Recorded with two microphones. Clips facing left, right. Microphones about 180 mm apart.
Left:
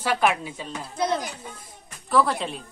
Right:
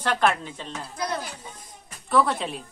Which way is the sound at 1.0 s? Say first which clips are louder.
Left 5 dB; 20° left (ahead or behind).